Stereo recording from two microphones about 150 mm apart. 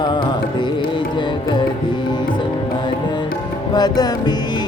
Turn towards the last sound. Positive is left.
turn(degrees=25)  # may be behind; listen again after turning